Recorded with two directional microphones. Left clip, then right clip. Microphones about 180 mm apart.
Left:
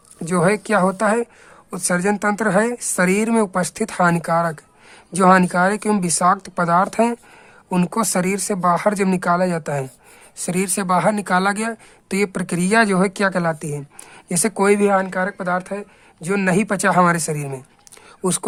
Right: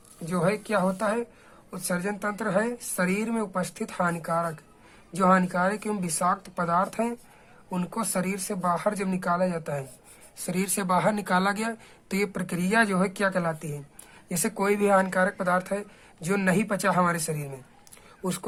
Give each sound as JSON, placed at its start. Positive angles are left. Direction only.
{"t": 0.3, "sound": "a woman's voice", "side_deg": 45}